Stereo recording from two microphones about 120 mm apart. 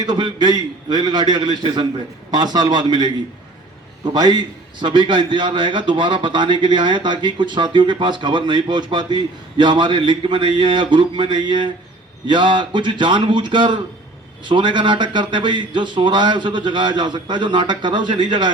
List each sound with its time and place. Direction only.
0.0 s a man's voice: 35° right (ahead or behind)